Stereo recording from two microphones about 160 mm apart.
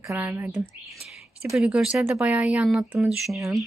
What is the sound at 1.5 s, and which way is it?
A woman's voice, 5° right (ahead or behind).